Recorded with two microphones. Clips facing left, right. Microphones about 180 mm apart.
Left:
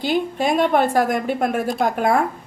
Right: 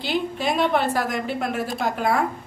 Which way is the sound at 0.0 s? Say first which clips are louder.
Left 4 dB; 45° left (ahead or behind).